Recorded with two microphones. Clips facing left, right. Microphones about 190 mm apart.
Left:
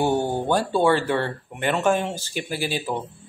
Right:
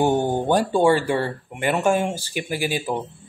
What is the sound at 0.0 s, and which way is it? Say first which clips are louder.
Speech: right 2 dB; 20° right (ahead or behind).